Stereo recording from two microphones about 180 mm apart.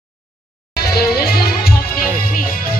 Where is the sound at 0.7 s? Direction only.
60° left (ahead or behind).